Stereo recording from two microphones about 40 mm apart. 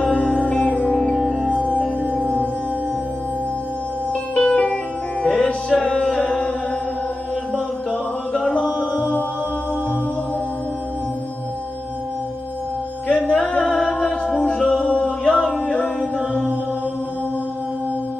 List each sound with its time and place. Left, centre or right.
0.0 s music: left
0.9 s music: centre
4.1 s music: left
7.5 s music: left
13.1 s music: centre